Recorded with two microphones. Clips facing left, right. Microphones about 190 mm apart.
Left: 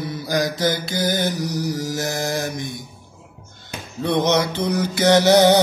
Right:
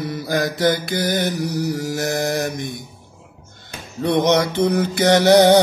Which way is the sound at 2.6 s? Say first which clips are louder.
Right 1 dB; 55° right (ahead or behind).